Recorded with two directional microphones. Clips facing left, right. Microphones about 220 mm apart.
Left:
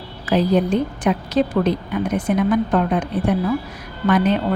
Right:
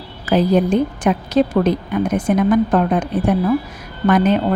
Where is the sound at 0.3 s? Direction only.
45° right (ahead or behind).